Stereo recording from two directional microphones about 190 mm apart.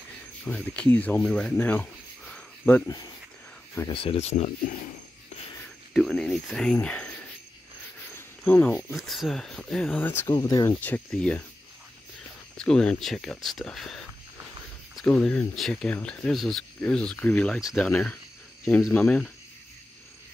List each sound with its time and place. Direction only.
0.5 s speech: 5° left (ahead or behind)
3.9 s speech: 30° left (ahead or behind)
5.9 s speech: 5° left (ahead or behind)
8.2 s cricket: 10° left (ahead or behind)
8.9 s speech: centre (ahead or behind); by 10.8 s 20° left (ahead or behind)
10.8 s speech: 5° left (ahead or behind)
12.5 s speech: 5° left (ahead or behind)
15.1 s speech: 5° left (ahead or behind)